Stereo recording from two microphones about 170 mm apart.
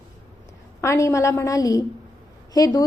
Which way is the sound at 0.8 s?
20° left (ahead or behind).